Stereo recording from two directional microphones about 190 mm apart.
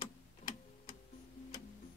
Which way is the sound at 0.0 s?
30° left (ahead or behind).